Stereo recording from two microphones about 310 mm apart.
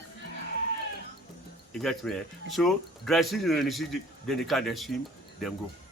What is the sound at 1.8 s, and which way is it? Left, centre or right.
A man's voice, centre.